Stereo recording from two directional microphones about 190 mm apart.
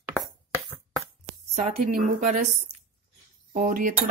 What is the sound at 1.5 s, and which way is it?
Speech, 45° right (ahead or behind).